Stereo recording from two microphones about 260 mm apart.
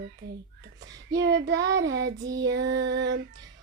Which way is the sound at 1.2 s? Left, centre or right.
Right.